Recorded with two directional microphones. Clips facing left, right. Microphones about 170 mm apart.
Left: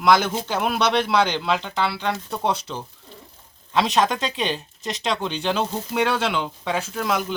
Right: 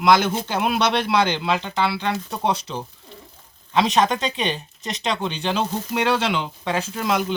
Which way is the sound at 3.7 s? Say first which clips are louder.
Right 1 dB; centre (ahead or behind).